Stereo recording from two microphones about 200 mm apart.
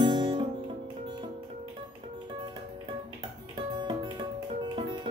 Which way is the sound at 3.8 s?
25° right (ahead or behind).